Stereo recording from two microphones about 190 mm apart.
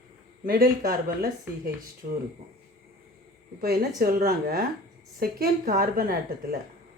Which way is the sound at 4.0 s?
50° right (ahead or behind).